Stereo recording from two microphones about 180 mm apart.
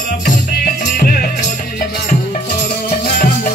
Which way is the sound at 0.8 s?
55° left (ahead or behind).